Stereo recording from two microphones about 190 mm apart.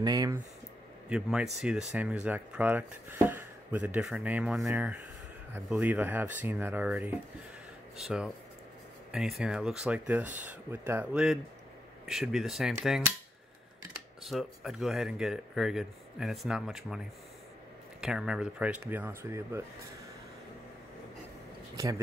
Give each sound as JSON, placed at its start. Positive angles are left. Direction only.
{"t": 0.0, "sound": "speech", "side_deg": -20}
{"t": 1.0, "sound": "speech", "side_deg": -5}
{"t": 14.2, "sound": "speech", "side_deg": 0}
{"t": 18.0, "sound": "speech", "side_deg": -5}
{"t": 21.7, "sound": "speech", "side_deg": -15}